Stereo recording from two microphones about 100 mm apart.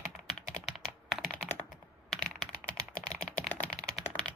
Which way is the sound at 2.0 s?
5° left (ahead or behind).